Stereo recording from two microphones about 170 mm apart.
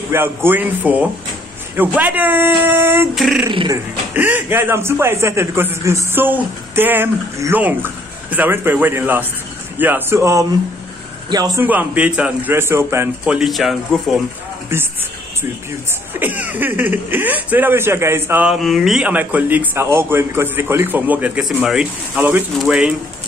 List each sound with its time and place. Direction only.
0.1 s speech: 15° right (ahead or behind)
3.2 s speech: centre (ahead or behind)
3.4 s speech: 25° right (ahead or behind)
4.1 s speech: 10° right (ahead or behind)
11.6 s speech: 10° right (ahead or behind)
16.1 s speech: 10° right (ahead or behind)